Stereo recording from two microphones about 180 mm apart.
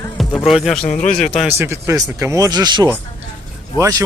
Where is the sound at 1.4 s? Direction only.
15° right (ahead or behind).